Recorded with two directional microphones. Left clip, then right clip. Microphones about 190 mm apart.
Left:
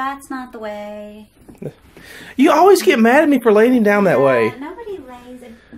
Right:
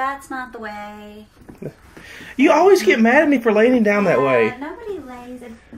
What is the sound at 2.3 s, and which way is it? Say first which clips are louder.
Speech: left 2 dB; 25° left (ahead or behind).